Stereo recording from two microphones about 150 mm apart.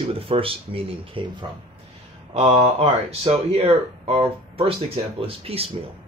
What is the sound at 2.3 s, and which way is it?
Speech, 45° right (ahead or behind).